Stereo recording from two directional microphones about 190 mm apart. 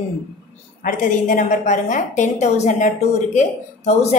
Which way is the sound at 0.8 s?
45° left (ahead or behind).